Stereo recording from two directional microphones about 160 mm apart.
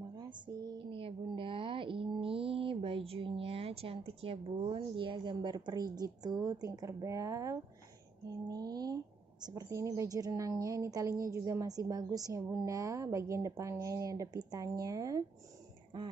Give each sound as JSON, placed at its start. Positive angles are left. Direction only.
{"t": 0.1, "sound": "a woman's voice", "side_deg": -25}